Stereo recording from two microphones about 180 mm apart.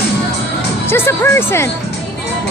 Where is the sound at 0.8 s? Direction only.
15° left (ahead or behind).